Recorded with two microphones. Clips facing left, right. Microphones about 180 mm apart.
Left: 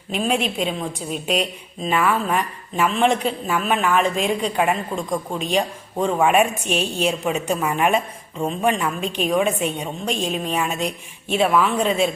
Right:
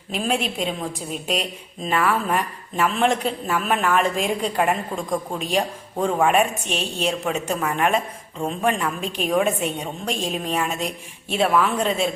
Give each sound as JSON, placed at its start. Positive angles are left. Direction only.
{"t": 0.1, "sound": "a woman's voice", "side_deg": 0}